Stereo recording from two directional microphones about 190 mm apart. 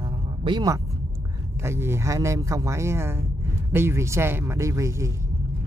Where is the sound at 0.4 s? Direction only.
25° right (ahead or behind).